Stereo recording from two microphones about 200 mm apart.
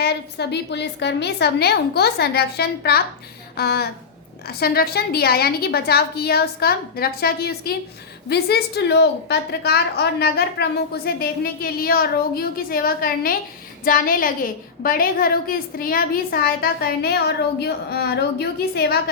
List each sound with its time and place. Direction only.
0.0 s a woman's voice: 55° left (ahead or behind)